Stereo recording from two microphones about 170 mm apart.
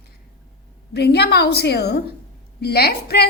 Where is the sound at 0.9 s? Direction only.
75° left (ahead or behind).